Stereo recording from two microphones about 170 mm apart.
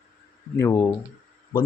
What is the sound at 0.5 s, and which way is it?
Speech, 15° left (ahead or behind).